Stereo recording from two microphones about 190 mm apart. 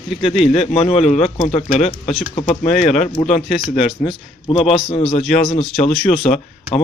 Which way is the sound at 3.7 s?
30° left (ahead or behind).